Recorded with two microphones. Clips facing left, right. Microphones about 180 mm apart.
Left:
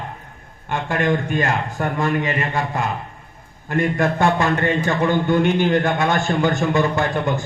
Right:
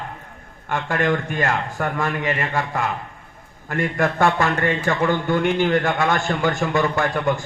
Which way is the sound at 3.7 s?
20° left (ahead or behind).